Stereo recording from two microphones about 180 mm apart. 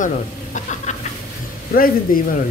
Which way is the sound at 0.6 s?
45° left (ahead or behind).